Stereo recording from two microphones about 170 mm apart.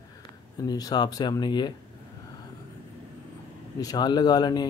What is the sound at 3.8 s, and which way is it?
Speech, 25° left (ahead or behind).